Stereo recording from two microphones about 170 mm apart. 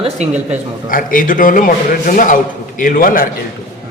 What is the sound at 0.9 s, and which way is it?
A man's voice, 55° left (ahead or behind).